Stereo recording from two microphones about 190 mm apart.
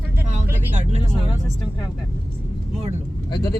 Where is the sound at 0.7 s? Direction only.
35° right (ahead or behind).